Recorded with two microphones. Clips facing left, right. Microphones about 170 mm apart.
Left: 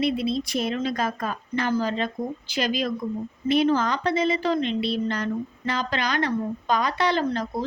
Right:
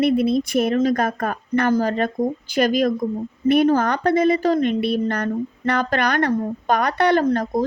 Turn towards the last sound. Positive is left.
turn(degrees=-45)  # may be behind; listen again after turning